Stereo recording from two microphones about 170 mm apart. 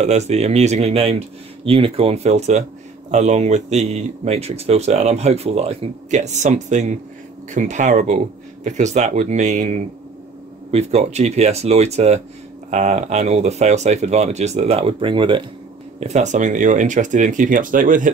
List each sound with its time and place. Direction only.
0.0 s speech: 40° right (ahead or behind)
16.0 s speech: 40° right (ahead or behind)